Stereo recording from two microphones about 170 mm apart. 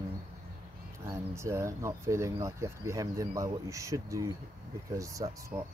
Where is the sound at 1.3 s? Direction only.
15° right (ahead or behind).